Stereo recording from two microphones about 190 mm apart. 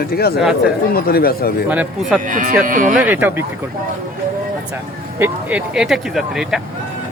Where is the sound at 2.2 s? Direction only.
45° right (ahead or behind).